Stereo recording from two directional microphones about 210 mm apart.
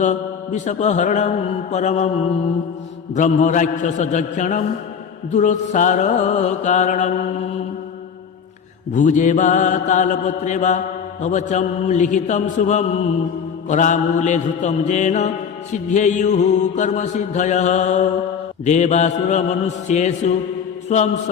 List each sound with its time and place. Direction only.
0.0 s mantra: 35° left (ahead or behind)
3.2 s mantra: 35° left (ahead or behind)
8.9 s mantra: 35° left (ahead or behind)